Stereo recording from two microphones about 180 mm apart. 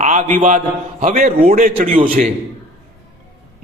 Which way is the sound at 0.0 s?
45° right (ahead or behind).